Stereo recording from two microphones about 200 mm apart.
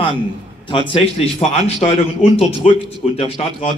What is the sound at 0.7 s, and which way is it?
A man's voice, 25° left (ahead or behind).